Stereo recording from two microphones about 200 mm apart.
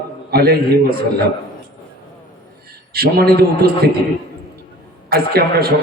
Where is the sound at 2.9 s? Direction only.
50° right (ahead or behind).